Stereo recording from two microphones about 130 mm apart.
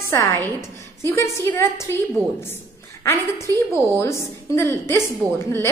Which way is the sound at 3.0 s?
20° left (ahead or behind).